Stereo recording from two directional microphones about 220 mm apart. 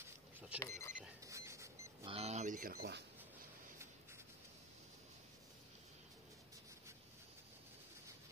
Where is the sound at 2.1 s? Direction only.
30° right (ahead or behind).